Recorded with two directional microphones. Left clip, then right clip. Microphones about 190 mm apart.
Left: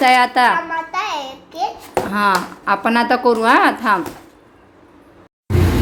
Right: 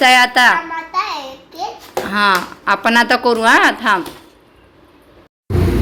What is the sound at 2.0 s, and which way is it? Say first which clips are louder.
A woman's voice: right 3 dB; 10° left (ahead or behind).